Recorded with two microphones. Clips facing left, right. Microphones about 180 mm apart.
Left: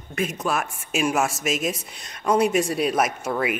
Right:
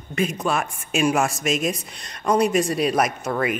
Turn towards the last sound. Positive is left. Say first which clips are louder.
# right 1 dB
turn(degrees=5)  # may be behind; listen again after turning